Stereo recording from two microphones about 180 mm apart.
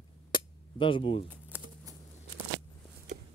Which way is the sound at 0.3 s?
30° left (ahead or behind).